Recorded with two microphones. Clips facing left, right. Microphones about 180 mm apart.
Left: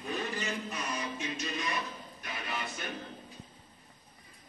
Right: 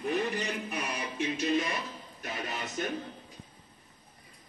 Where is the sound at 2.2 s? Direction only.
40° right (ahead or behind).